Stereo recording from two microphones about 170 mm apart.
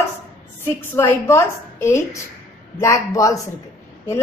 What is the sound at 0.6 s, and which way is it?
A woman's voice, 15° left (ahead or behind).